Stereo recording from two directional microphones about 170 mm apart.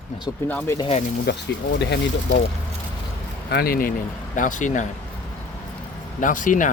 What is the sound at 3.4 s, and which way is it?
Speech, 65° left (ahead or behind).